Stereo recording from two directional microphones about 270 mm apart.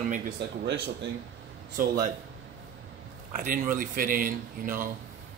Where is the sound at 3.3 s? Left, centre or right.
Right.